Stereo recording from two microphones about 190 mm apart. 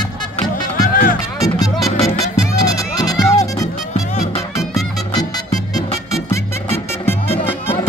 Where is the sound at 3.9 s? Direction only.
35° left (ahead or behind).